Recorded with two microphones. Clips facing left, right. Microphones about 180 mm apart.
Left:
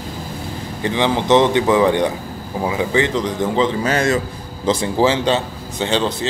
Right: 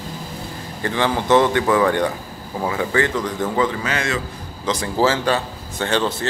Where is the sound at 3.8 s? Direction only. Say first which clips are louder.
Left 6 dB; 40° left (ahead or behind).